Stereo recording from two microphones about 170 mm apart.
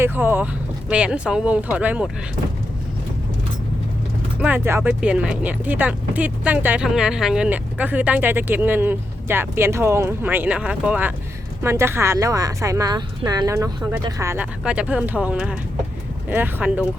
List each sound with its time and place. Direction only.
0.0 s speech: 10° right (ahead or behind)
4.4 s speech: 10° right (ahead or behind)